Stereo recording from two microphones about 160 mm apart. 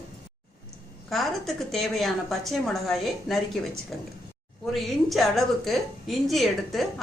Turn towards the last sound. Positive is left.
turn(degrees=0)  # may be behind; listen again after turning